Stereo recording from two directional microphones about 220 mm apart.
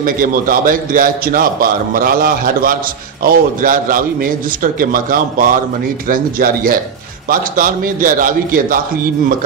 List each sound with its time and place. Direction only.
0.0 s a man's voice: 40° right (ahead or behind)